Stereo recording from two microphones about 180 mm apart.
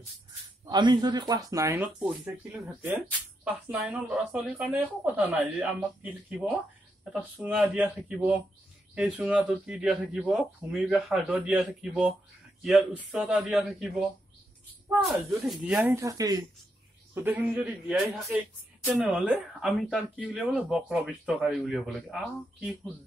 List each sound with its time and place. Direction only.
0.7 s speech: 25° right (ahead or behind); by 12.1 s 5° right (ahead or behind)
13.1 s speech: 5° right (ahead or behind)
14.9 s speech: 5° right (ahead or behind)